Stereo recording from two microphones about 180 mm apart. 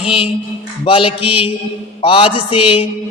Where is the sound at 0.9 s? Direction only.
30° left (ahead or behind).